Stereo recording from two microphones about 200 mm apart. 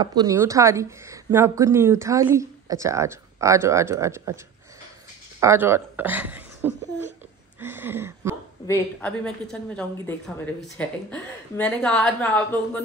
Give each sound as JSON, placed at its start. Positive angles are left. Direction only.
{"t": 0.0, "sound": "a woman's voice", "side_deg": -20}
{"t": 5.4, "sound": "a woman's voice", "side_deg": -10}
{"t": 7.6, "sound": "a sound", "side_deg": -10}
{"t": 8.6, "sound": "a woman's voice", "side_deg": 15}